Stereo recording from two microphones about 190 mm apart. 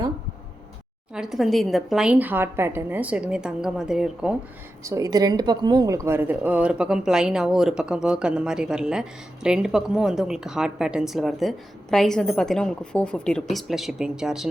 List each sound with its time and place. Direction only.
1.1 s speech: centre (ahead or behind)
4.8 s speech: 15° right (ahead or behind)